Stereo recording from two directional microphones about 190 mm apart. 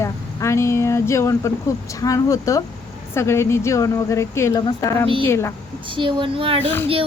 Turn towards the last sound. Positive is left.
turn(degrees=10)  # may be behind; listen again after turning